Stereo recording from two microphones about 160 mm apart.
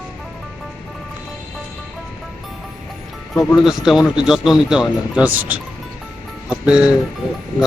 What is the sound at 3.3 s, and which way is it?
Speech, centre (ahead or behind).